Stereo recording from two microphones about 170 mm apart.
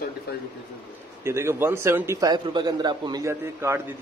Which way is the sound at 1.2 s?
15° right (ahead or behind).